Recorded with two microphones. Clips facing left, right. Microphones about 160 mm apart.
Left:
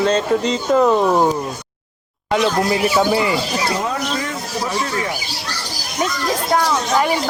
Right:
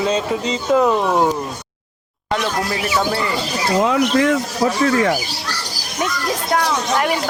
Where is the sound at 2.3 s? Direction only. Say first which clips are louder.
Left 4 dB; 10° left (ahead or behind).